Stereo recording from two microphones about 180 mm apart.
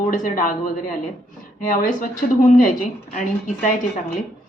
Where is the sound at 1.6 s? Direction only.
50° left (ahead or behind).